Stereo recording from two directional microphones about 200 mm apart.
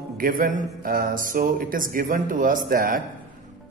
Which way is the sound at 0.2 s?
45° right (ahead or behind).